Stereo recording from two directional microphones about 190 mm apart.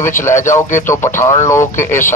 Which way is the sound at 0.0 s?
15° left (ahead or behind).